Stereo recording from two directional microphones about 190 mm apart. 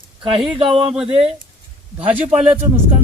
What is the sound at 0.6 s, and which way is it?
Speech, 30° right (ahead or behind).